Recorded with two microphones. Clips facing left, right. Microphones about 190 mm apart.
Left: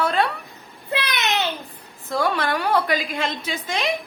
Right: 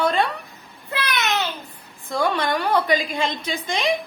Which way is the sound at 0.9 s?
15° left (ahead or behind).